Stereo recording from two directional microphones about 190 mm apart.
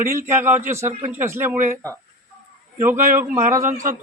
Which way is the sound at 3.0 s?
45° right (ahead or behind).